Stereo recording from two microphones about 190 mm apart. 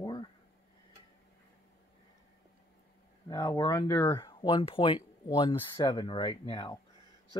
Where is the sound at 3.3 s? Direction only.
20° left (ahead or behind).